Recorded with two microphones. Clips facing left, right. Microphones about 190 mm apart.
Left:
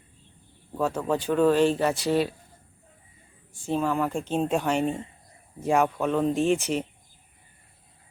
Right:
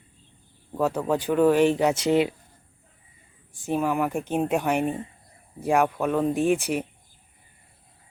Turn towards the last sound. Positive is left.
turn(degrees=-15)  # may be behind; listen again after turning